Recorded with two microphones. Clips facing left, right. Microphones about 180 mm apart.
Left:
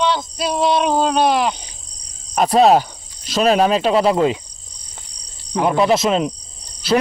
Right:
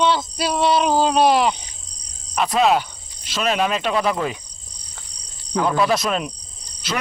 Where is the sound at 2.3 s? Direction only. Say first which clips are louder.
Left 5 dB; 35° left (ahead or behind).